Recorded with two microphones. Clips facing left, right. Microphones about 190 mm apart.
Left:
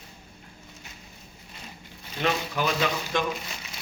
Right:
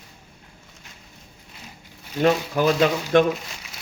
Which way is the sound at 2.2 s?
40° right (ahead or behind).